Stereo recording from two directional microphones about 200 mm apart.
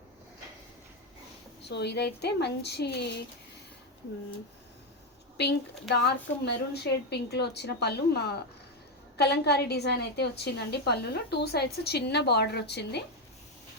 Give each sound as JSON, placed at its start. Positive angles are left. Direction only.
{"t": 1.6, "sound": "a woman's voice", "side_deg": 55}
{"t": 5.4, "sound": "a woman's voice", "side_deg": 55}